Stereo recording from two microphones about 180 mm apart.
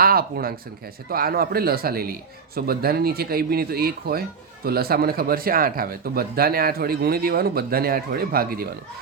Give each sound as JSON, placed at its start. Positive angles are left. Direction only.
{"t": 0.0, "sound": "speech", "side_deg": -55}